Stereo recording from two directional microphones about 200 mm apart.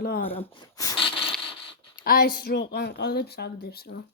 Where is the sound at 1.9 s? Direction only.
50° left (ahead or behind).